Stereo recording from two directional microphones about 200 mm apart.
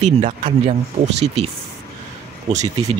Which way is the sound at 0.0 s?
35° right (ahead or behind).